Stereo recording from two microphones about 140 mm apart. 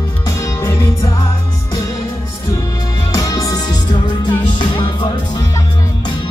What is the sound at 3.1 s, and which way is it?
Music, 25° left (ahead or behind).